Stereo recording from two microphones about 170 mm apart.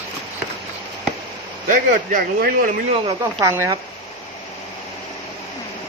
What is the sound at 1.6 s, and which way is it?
Speech, 55° right (ahead or behind).